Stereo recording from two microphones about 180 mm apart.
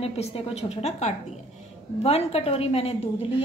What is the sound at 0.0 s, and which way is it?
A woman's voice, 35° left (ahead or behind).